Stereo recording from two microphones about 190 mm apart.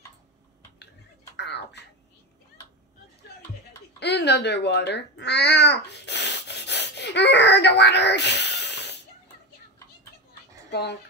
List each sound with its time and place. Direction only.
1.3 s a sound: 65° left (ahead or behind)
4.0 s babbling: 60° left (ahead or behind)
10.7 s speech: 60° left (ahead or behind)